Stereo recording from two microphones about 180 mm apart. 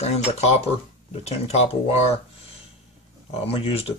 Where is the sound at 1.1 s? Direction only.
35° left (ahead or behind).